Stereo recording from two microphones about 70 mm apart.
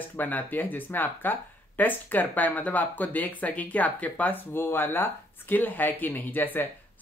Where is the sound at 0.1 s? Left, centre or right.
Left.